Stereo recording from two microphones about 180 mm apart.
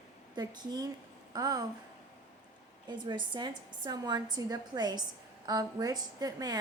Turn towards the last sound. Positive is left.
turn(degrees=-20)  # may be behind; listen again after turning